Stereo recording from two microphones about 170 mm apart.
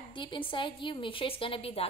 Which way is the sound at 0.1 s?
30° left (ahead or behind).